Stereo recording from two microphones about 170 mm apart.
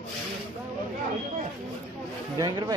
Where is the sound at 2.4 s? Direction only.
25° right (ahead or behind).